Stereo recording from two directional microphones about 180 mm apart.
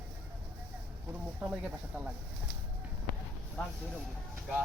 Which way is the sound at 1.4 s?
10° right (ahead or behind).